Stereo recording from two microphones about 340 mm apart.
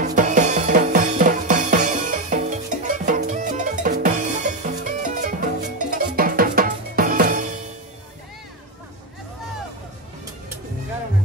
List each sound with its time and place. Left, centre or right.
0.0 s drum kit: right